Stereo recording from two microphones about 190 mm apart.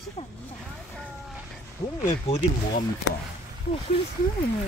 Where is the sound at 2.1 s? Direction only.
35° left (ahead or behind).